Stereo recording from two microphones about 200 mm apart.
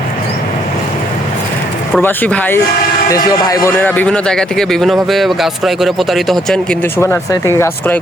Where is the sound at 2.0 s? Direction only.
10° left (ahead or behind).